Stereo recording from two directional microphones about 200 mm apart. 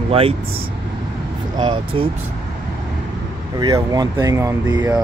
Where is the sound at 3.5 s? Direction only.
20° right (ahead or behind).